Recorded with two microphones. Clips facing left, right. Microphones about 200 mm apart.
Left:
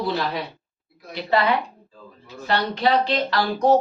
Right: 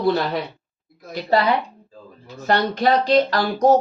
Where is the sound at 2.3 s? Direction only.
45° right (ahead or behind).